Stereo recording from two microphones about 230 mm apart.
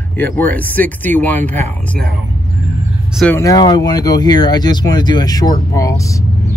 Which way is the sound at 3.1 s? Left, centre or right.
Centre.